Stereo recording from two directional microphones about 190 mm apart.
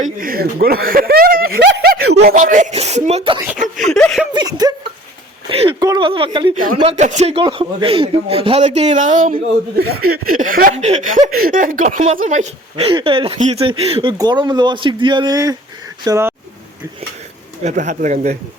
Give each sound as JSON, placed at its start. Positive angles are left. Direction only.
{"t": 0.0, "sound": "a sound", "side_deg": -50}
{"t": 2.2, "sound": "speech", "side_deg": -45}
{"t": 3.4, "sound": "speech", "side_deg": -5}
{"t": 4.4, "sound": "speech", "side_deg": -20}
{"t": 17.6, "sound": "speech", "side_deg": -40}